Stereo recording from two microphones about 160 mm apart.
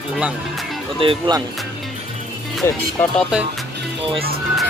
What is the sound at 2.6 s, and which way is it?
Speech, 15° left (ahead or behind).